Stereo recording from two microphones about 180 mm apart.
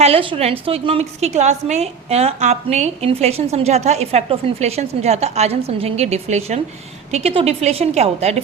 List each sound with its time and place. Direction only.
0.0 s a woman's voice: 30° right (ahead or behind)